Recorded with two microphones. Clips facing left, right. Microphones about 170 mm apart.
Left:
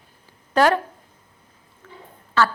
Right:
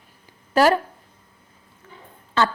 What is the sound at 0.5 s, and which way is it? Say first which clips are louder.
Speech: right 1 dB; 5° right (ahead or behind).